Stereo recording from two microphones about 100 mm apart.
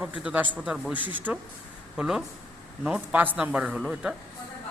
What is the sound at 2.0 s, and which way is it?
Speech, 5° right (ahead or behind).